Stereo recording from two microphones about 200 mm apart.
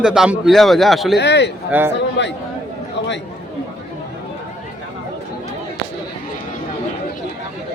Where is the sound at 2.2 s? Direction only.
60° left (ahead or behind).